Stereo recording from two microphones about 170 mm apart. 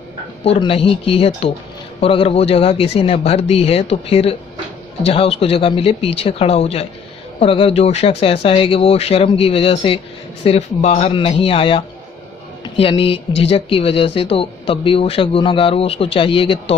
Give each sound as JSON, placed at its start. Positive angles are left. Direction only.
{"t": 0.5, "sound": "speech", "side_deg": 35}